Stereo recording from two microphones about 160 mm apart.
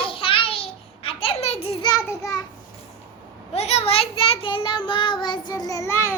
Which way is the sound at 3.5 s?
40° left (ahead or behind).